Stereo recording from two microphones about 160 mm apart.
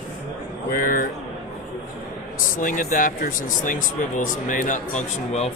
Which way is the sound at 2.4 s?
55° left (ahead or behind).